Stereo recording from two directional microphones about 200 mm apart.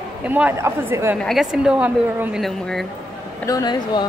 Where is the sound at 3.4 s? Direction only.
20° left (ahead or behind).